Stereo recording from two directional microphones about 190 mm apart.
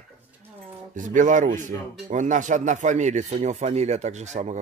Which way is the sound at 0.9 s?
40° right (ahead or behind).